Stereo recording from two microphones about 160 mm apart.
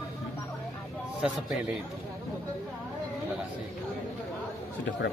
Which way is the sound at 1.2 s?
Centre (ahead or behind).